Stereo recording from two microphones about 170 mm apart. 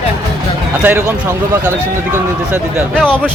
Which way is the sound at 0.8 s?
15° right (ahead or behind).